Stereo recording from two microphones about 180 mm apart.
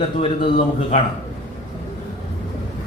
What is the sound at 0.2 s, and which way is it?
Speech, 40° left (ahead or behind).